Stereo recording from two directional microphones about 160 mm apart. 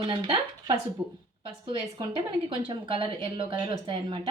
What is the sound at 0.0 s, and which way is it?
Speech, 35° right (ahead or behind).